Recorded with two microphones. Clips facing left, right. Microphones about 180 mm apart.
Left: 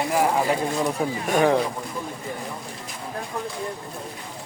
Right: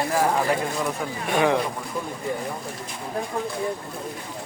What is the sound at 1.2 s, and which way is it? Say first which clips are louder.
Speech: left 1 dB; 40° left (ahead or behind).